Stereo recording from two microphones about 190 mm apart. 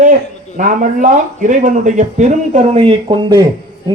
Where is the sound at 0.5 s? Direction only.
45° right (ahead or behind).